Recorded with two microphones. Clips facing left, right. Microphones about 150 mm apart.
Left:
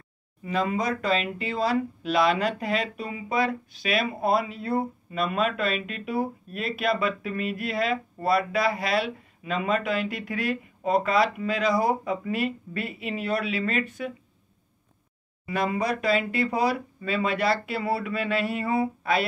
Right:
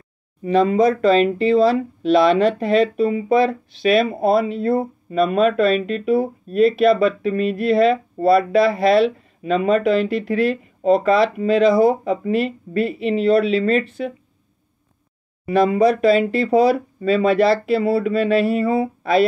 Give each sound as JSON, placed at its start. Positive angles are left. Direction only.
{"t": 0.4, "sound": "speech", "side_deg": -35}
{"t": 15.4, "sound": "speech", "side_deg": -30}